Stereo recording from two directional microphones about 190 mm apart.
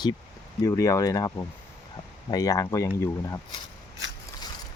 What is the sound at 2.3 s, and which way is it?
Speech, 20° left (ahead or behind).